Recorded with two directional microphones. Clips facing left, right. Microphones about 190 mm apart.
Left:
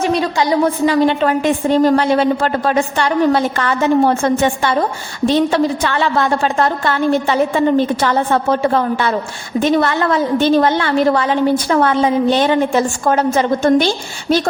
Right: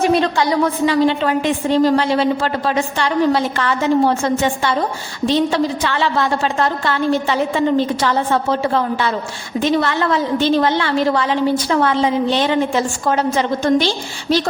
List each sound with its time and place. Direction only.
0.9 s a woman's voice: 50° left (ahead or behind)